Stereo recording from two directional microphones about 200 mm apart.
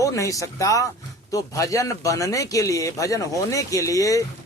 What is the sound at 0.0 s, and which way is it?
Speech, 15° left (ahead or behind).